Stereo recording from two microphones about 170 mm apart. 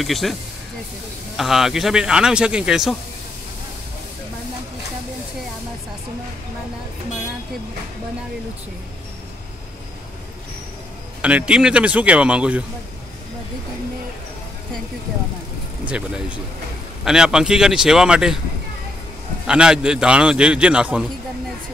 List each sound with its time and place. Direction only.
0.0 s speech: centre (ahead or behind)
11.1 s speech: 5° right (ahead or behind)
15.8 s speech: 5° right (ahead or behind)
19.4 s speech: 5° right (ahead or behind)